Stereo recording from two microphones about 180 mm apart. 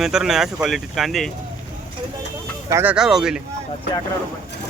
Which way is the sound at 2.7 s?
10° right (ahead or behind).